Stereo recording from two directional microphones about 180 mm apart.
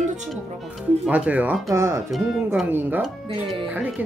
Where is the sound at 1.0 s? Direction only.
5° right (ahead or behind).